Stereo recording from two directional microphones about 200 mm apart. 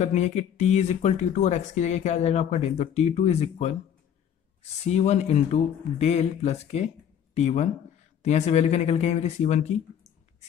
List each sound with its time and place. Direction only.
0.0 s speech: 35° left (ahead or behind)
4.8 s speech: 35° left (ahead or behind)